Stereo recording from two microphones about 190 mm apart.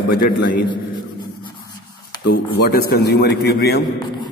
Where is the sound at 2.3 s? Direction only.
55° left (ahead or behind).